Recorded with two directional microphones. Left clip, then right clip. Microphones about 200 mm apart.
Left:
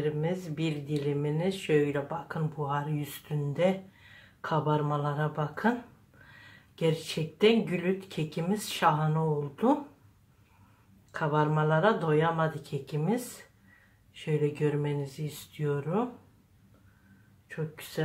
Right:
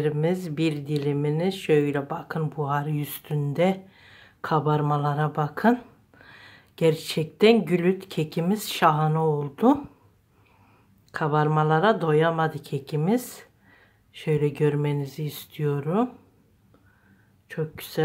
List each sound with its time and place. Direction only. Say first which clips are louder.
0.0 s speech: right 6 dB; 50° right (ahead or behind)
11.1 s speech: right 5 dB; 50° right (ahead or behind)
17.5 s speech: right 7 dB; 45° right (ahead or behind)